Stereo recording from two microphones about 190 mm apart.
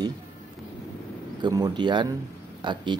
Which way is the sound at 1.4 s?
20° right (ahead or behind).